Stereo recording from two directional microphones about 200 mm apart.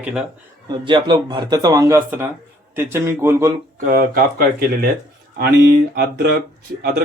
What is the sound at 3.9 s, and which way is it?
Speech, 50° right (ahead or behind).